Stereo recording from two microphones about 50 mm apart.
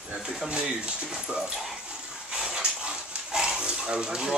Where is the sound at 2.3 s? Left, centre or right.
Centre.